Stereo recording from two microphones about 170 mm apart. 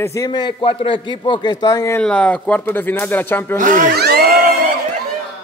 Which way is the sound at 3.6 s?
50° right (ahead or behind).